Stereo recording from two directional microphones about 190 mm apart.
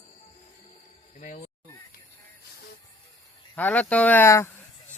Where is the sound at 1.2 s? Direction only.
40° left (ahead or behind).